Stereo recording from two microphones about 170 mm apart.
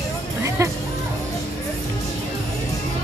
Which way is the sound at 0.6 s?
15° right (ahead or behind).